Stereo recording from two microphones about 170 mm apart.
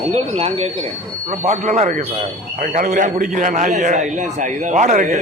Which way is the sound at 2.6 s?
50° right (ahead or behind).